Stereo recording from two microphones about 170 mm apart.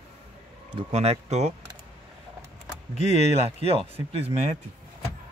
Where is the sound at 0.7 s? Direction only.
35° right (ahead or behind).